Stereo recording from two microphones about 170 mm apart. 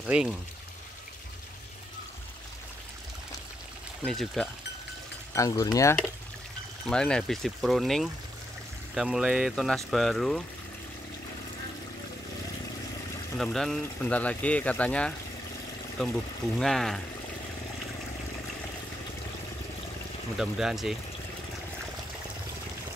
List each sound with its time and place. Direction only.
0.0 s speech: 5° right (ahead or behind)
4.0 s speech: centre (ahead or behind)
5.3 s speech: 20° left (ahead or behind)
6.9 s speech: 5° left (ahead or behind)
13.4 s speech: centre (ahead or behind)
20.3 s speech: 5° right (ahead or behind)